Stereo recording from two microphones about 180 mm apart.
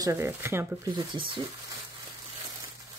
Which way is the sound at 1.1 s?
30° right (ahead or behind).